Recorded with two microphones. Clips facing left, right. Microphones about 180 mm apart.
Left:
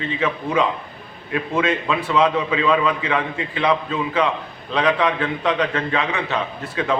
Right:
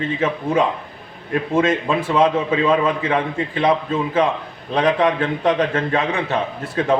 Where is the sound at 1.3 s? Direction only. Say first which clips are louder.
Right 3 dB; 45° right (ahead or behind).